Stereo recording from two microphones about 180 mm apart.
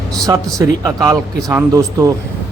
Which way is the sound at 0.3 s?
20° right (ahead or behind).